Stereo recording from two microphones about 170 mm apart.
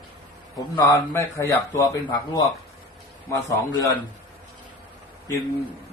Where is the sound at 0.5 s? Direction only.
20° left (ahead or behind).